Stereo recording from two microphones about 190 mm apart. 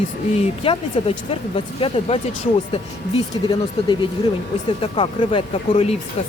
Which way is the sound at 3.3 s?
25° left (ahead or behind).